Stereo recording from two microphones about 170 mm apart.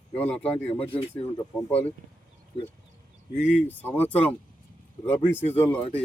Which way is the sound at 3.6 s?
10° left (ahead or behind).